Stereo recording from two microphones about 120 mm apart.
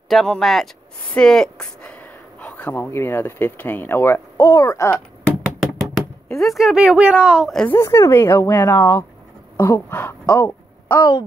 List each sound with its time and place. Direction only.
0.1 s speech: centre (ahead or behind); by 4.5 s 20° left (ahead or behind)
4.5 s speech: 30° left (ahead or behind)
5.9 s speech: centre (ahead or behind)
7.6 s speech: 20° left (ahead or behind)